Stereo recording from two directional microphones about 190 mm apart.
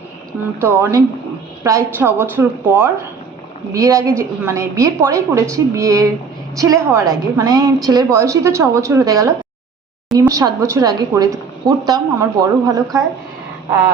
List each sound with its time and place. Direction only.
0.6 s a woman's voice: 15° right (ahead or behind)